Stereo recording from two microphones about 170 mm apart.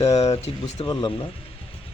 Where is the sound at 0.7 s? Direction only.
25° left (ahead or behind).